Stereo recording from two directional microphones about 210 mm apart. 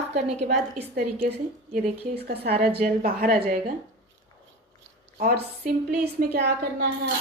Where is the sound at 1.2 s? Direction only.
50° right (ahead or behind).